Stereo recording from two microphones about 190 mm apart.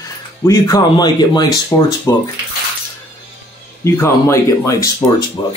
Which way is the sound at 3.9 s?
15° left (ahead or behind).